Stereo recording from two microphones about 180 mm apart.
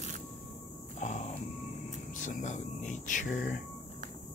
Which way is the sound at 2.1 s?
45° left (ahead or behind).